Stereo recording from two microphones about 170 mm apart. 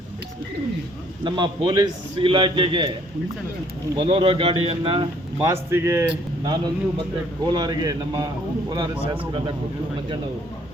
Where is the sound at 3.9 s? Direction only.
30° right (ahead or behind).